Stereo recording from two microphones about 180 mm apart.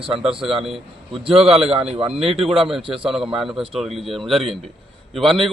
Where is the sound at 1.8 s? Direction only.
30° right (ahead or behind).